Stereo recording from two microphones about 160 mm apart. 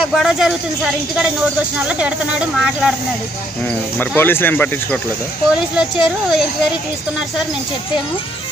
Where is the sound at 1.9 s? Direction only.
5° right (ahead or behind).